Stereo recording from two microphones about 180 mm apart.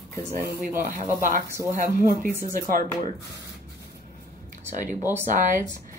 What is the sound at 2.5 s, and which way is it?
Speech, 50° right (ahead or behind).